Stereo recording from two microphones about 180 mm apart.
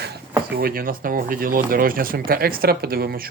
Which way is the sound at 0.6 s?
55° right (ahead or behind).